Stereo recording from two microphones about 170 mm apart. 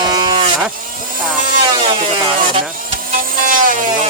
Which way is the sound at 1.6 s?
30° right (ahead or behind).